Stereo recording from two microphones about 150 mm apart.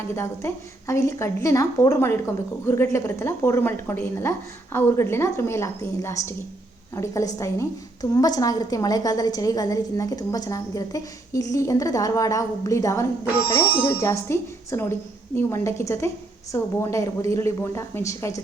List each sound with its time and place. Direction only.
0.1 s a woman's voice: 20° left (ahead or behind)